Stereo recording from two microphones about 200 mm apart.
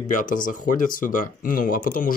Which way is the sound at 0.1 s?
40° left (ahead or behind).